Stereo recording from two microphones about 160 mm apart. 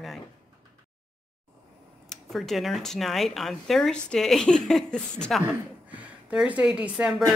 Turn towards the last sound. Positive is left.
turn(degrees=-5)  # may be behind; listen again after turning